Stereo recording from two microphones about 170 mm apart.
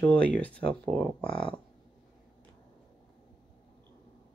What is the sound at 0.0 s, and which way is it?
Speech, 10° left (ahead or behind).